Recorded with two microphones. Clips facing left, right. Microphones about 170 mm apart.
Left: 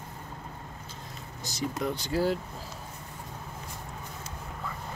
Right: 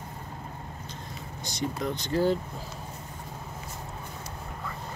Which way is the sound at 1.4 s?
5° left (ahead or behind).